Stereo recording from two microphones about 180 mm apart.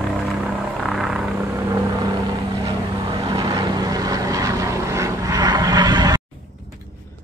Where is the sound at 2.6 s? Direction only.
20° right (ahead or behind).